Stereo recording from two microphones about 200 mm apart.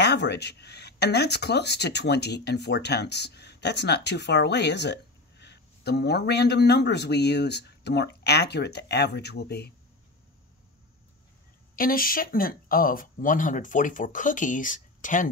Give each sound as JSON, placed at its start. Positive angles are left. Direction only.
{"t": 0.0, "sound": "speech", "side_deg": 55}
{"t": 11.7, "sound": "speech", "side_deg": 45}